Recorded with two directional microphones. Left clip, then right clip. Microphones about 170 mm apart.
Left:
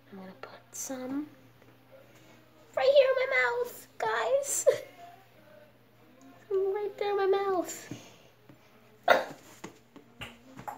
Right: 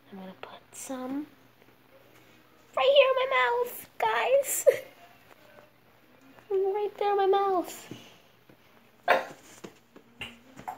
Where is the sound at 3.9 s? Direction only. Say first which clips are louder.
Right 4 dB; 20° right (ahead or behind).